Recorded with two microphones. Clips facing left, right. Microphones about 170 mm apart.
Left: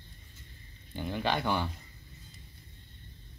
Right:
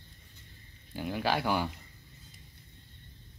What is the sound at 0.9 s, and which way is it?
Speech, 5° right (ahead or behind).